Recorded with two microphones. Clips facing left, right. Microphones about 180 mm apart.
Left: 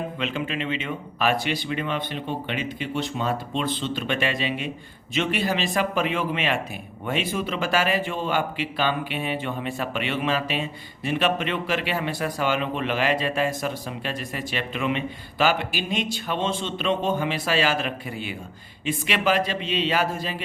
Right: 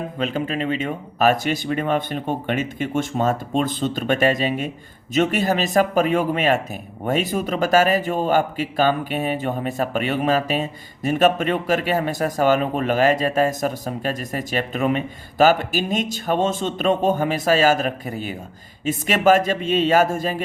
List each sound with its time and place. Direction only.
0.2 s a man's voice: 40° right (ahead or behind)